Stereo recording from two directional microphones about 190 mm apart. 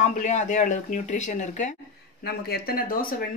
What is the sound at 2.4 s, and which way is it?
Speech, 50° left (ahead or behind).